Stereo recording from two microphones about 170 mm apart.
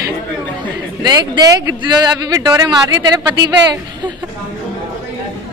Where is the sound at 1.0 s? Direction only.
20° right (ahead or behind).